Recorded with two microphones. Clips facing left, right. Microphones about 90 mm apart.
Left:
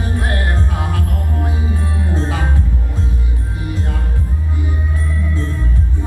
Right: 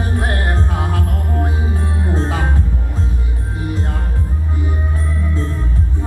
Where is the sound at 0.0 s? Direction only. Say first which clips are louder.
Right 1 dB; 30° right (ahead or behind).